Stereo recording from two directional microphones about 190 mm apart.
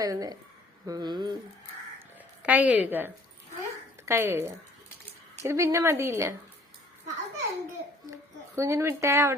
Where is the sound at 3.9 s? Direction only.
15° right (ahead or behind).